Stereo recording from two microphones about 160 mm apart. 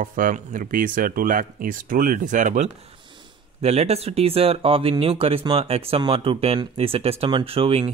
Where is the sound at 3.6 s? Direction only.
40° right (ahead or behind).